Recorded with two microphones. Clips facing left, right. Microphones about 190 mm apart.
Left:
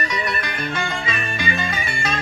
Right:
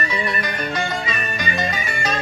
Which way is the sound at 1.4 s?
40° right (ahead or behind).